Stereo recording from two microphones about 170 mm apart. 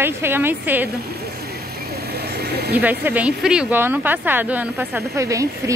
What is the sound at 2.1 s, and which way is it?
Vehicle, 70° right (ahead or behind).